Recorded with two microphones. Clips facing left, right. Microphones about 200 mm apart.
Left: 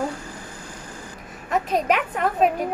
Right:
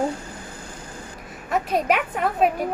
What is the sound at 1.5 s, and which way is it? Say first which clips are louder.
Speech: even; 5° right (ahead or behind).